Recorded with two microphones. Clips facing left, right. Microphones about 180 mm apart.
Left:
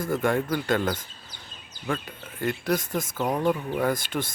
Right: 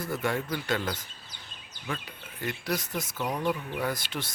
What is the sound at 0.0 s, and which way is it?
Speech, 50° left (ahead or behind).